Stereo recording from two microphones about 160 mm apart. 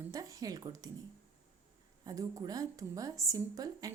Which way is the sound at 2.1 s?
25° right (ahead or behind).